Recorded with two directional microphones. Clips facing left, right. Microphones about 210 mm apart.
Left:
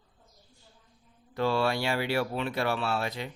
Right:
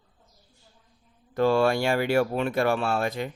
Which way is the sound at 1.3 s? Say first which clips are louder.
Right 6 dB; 50° right (ahead or behind).